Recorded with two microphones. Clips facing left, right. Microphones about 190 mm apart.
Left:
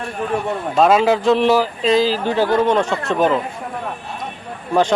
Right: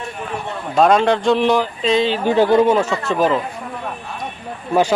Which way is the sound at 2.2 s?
15° right (ahead or behind).